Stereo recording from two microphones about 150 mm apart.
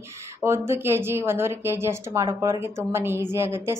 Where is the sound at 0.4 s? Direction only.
15° right (ahead or behind).